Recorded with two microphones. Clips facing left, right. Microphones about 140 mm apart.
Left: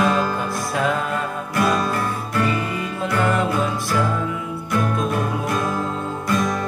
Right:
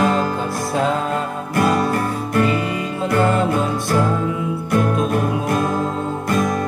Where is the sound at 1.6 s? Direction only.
45° right (ahead or behind).